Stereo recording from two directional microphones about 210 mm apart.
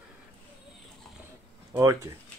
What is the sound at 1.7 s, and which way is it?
Speech, 15° right (ahead or behind).